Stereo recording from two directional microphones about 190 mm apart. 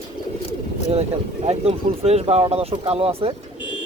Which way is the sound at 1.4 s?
35° right (ahead or behind).